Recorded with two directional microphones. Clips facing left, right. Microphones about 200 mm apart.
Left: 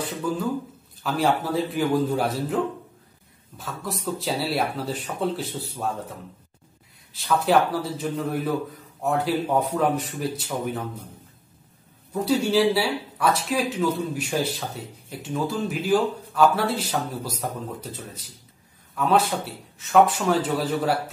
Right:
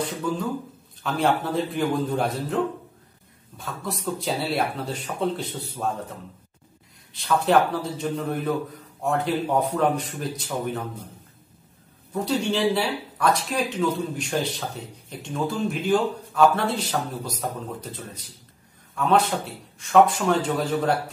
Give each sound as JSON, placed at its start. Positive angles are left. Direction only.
{"t": 1.0, "sound": "speech", "side_deg": 5}
{"t": 7.2, "sound": "speech", "side_deg": 5}
{"t": 12.1, "sound": "speech", "side_deg": 5}